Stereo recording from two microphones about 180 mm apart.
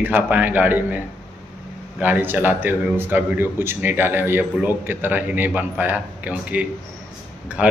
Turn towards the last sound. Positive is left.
turn(degrees=-10)  # may be behind; listen again after turning